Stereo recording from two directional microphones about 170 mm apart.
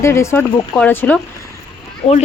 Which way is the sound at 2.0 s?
40° left (ahead or behind).